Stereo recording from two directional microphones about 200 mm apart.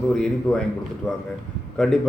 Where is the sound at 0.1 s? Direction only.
5° left (ahead or behind).